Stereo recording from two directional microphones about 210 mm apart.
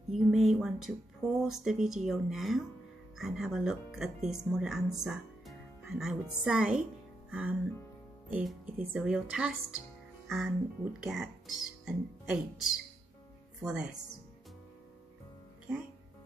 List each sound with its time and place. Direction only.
0.1 s a woman's voice: centre (ahead or behind)
7.2 s music: 5° right (ahead or behind)
8.3 s speech: 5° right (ahead or behind)